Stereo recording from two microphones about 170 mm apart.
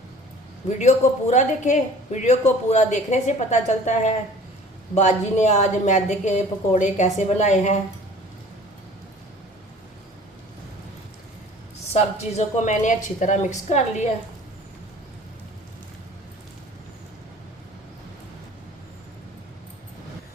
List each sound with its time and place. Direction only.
0.7 s speech: 45° left (ahead or behind)
11.9 s speech: 40° left (ahead or behind)